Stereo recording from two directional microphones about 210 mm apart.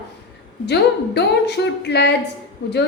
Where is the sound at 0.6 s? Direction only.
55° left (ahead or behind).